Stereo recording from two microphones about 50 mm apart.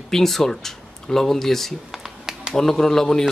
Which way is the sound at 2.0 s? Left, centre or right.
Centre.